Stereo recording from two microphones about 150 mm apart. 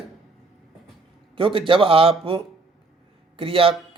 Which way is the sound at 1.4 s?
35° right (ahead or behind).